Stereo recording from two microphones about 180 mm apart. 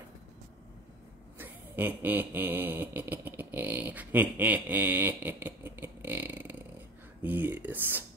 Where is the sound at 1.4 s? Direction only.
10° right (ahead or behind).